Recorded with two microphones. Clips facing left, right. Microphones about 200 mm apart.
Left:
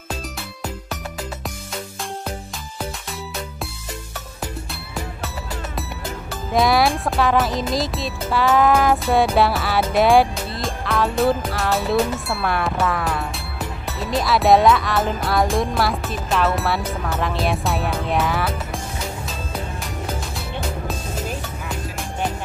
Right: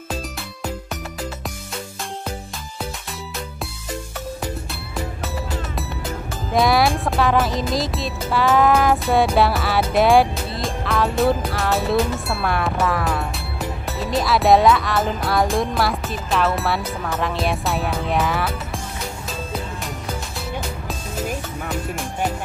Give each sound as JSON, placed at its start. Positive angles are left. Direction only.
{"t": 5.8, "sound": "speech", "side_deg": 0}
{"t": 13.9, "sound": "music", "side_deg": 0}